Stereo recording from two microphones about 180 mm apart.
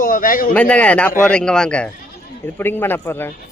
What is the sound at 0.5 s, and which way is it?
A man's voice, 5° left (ahead or behind).